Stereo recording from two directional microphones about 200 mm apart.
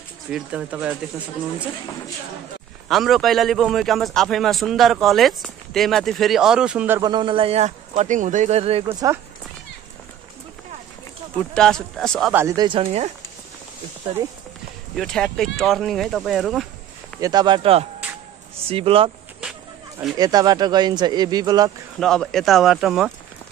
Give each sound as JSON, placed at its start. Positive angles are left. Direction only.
{"t": 0.3, "sound": "a man's voice", "side_deg": -5}
{"t": 2.9, "sound": "a man's voice", "side_deg": 0}
{"t": 7.0, "sound": "speech", "side_deg": -20}
{"t": 11.3, "sound": "a man's voice", "side_deg": 5}
{"t": 12.3, "sound": "speech", "side_deg": -15}
{"t": 15.0, "sound": "a man's voice", "side_deg": 5}
{"t": 17.2, "sound": "speech", "side_deg": -20}
{"t": 20.2, "sound": "speech", "side_deg": -20}
{"t": 22.0, "sound": "a man's voice", "side_deg": 0}